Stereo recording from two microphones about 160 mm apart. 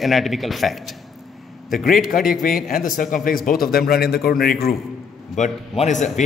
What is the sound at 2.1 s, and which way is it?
A man's voice, 60° left (ahead or behind).